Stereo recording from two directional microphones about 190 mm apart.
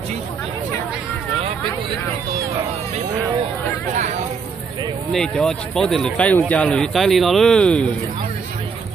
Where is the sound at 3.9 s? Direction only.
40° right (ahead or behind).